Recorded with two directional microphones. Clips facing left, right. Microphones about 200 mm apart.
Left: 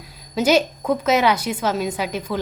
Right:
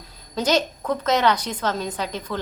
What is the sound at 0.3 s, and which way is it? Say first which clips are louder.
A woman's voice: left 4 dB; 10° left (ahead or behind).